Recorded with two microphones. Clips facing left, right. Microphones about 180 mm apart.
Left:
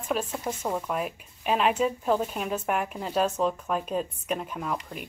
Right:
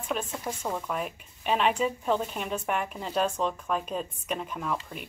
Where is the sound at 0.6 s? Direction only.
10° left (ahead or behind).